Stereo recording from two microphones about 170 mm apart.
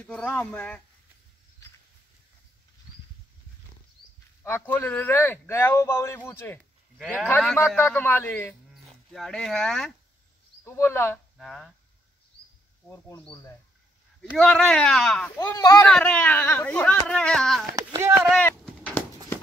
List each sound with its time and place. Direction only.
0.0 s speech: 5° left (ahead or behind)
4.4 s a man's voice: 15° left (ahead or behind)
10.6 s a man's voice: 15° left (ahead or behind)
11.3 s speech: centre (ahead or behind)
12.8 s a man's voice: 10° left (ahead or behind)
14.3 s a man's voice: 5° left (ahead or behind)
15.9 s a man's voice: 5° left (ahead or behind)
17.7 s a sound: 15° right (ahead or behind)
18.1 s a sound: 5° left (ahead or behind)